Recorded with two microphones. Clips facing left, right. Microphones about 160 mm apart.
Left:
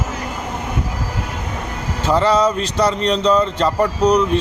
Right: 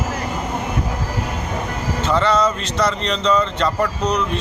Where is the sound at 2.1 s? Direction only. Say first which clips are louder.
Left 3 dB; 35° left (ahead or behind).